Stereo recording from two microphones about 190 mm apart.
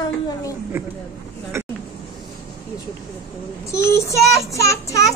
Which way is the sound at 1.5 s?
15° right (ahead or behind).